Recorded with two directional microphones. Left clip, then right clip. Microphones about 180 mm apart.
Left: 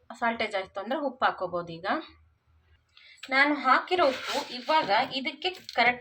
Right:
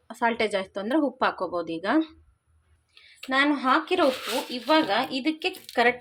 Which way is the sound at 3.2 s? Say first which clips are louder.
Even; 65° right (ahead or behind).